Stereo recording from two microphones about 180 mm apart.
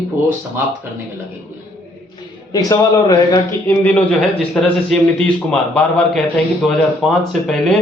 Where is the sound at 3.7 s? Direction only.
10° left (ahead or behind).